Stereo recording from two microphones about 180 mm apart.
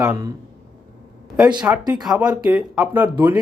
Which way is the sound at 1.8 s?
20° right (ahead or behind).